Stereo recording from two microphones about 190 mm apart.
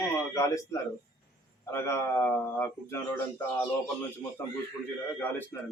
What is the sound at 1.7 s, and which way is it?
Speech, 15° left (ahead or behind).